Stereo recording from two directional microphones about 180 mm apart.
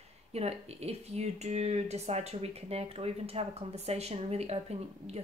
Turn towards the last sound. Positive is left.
turn(degrees=-35)  # may be behind; listen again after turning